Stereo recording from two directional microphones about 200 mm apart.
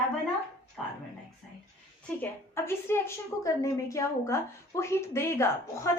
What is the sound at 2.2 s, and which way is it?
A woman's voice, 10° left (ahead or behind).